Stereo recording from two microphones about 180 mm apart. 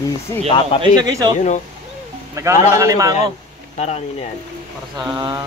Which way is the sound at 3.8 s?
35° left (ahead or behind).